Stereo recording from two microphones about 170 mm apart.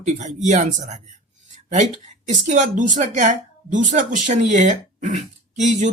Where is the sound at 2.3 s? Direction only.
45° right (ahead or behind).